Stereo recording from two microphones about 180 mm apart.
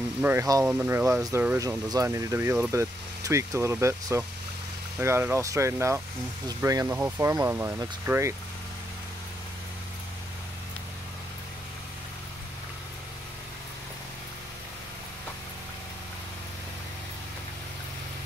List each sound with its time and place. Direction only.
0.2 s speech: 15° right (ahead or behind)